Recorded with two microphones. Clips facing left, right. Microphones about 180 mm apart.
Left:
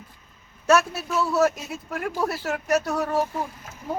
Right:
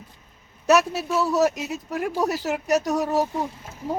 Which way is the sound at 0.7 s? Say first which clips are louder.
Right 1 dB; 15° right (ahead or behind).